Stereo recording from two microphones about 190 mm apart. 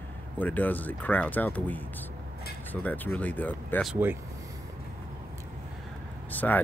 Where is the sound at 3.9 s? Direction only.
10° right (ahead or behind).